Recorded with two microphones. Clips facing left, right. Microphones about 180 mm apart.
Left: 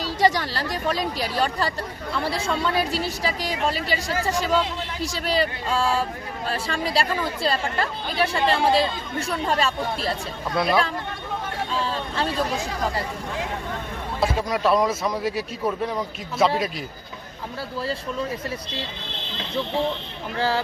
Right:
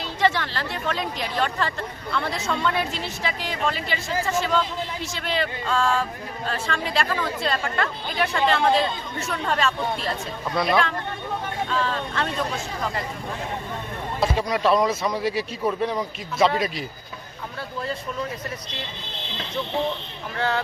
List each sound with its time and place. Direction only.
0.0 s speech: 40° left (ahead or behind)
10.6 s speech: centre (ahead or behind)
11.7 s speech: 35° left (ahead or behind)
14.2 s speech: centre (ahead or behind)
20.3 s speech: 30° left (ahead or behind)